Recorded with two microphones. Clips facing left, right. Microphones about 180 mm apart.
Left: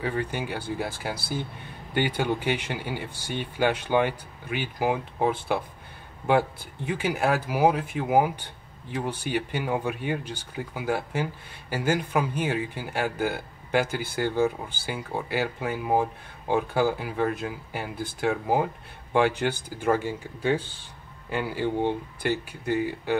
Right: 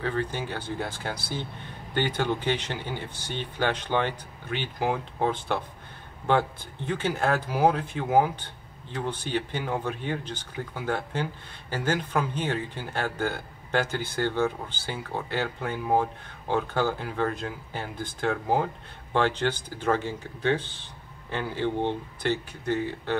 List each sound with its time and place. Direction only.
0.0 s speech: 10° left (ahead or behind)